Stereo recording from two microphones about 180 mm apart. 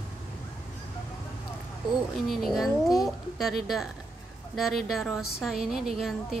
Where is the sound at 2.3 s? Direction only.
Centre (ahead or behind).